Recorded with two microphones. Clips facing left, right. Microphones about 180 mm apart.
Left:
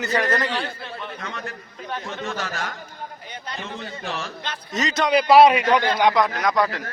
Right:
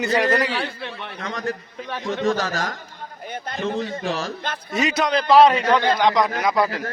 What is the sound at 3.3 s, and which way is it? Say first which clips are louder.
Speech: right 8 dB; 50° right (ahead or behind).